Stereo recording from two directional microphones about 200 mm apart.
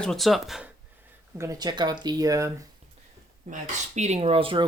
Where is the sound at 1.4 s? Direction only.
20° right (ahead or behind).